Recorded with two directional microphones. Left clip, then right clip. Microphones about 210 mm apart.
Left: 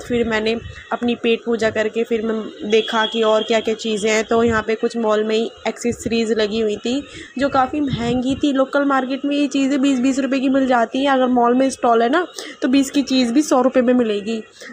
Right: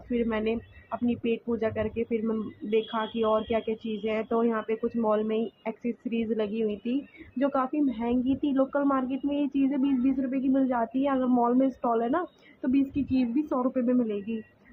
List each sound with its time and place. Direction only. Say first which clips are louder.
0.1 s speech: left 10 dB; 25° left (ahead or behind)